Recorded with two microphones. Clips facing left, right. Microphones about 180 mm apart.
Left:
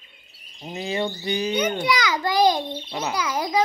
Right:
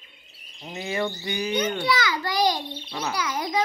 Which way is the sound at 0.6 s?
25° left (ahead or behind).